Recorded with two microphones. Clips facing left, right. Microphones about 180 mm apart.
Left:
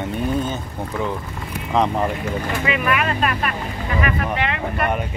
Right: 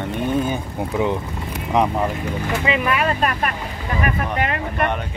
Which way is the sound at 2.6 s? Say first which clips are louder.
Right 1 dB; 25° right (ahead or behind).